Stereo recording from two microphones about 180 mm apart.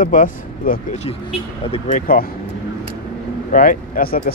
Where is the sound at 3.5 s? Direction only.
50° left (ahead or behind).